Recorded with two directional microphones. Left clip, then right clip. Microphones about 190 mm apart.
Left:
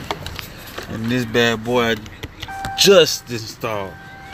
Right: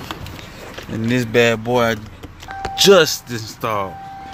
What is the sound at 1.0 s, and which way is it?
Speech, 35° right (ahead or behind).